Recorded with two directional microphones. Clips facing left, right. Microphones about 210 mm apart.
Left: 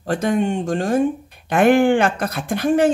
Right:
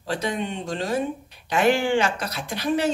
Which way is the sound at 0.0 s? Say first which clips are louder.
Left 8 dB; 50° left (ahead or behind).